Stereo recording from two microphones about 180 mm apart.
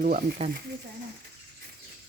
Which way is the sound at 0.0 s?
50° right (ahead or behind).